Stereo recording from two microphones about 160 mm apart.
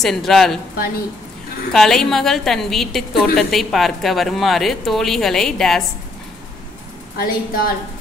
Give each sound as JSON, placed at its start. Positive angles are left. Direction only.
{"t": 0.0, "sound": "speech", "side_deg": 0}
{"t": 1.7, "sound": "speech", "side_deg": 5}
{"t": 7.2, "sound": "a woman's voice", "side_deg": 65}